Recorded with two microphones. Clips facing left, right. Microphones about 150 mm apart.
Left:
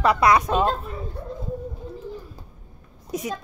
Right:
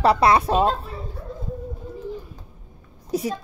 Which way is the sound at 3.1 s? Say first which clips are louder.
Right 5 dB; 30° right (ahead or behind).